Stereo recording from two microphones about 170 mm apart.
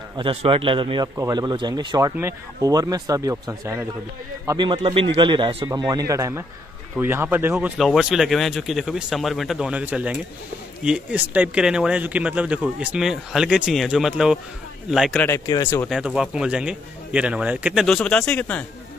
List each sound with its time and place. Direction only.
0.2 s a man's voice: 30° right (ahead or behind); by 15.1 s centre (ahead or behind)
15.1 s speech: 15° left (ahead or behind)
15.9 s speech: centre (ahead or behind)